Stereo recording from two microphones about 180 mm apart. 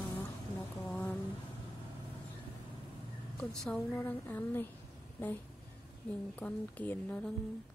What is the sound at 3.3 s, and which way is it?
Speech, 5° left (ahead or behind).